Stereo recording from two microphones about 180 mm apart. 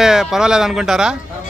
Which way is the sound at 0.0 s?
5° right (ahead or behind).